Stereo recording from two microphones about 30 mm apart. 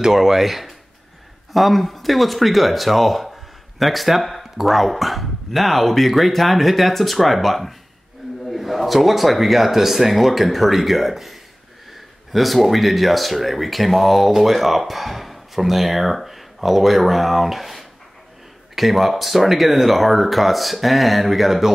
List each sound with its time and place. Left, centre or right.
0.1 s speech: centre